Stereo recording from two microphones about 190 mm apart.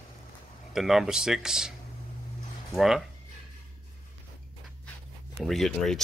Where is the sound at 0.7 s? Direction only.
Centre (ahead or behind).